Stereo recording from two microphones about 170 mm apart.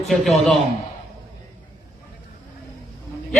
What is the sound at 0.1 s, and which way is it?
Speech, centre (ahead or behind).